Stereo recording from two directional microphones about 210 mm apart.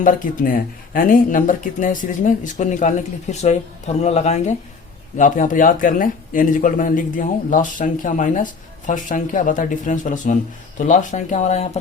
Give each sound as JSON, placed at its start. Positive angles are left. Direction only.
{"t": 0.0, "sound": "a man's voice", "side_deg": 40}